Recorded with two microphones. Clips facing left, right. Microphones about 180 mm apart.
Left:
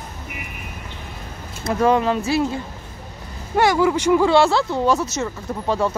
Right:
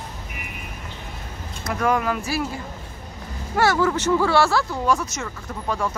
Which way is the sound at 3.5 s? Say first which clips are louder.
Left 3 dB; 15° left (ahead or behind).